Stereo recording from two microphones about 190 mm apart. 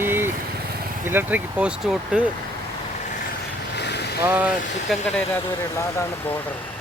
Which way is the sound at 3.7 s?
60° left (ahead or behind).